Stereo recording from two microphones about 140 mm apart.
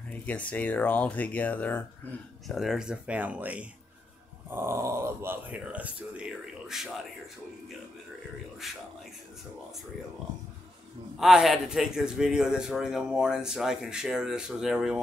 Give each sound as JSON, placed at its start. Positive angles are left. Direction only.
{"t": 0.1, "sound": "speech", "side_deg": 10}
{"t": 2.4, "sound": "speech", "side_deg": 0}
{"t": 11.1, "sound": "a man's voice", "side_deg": -5}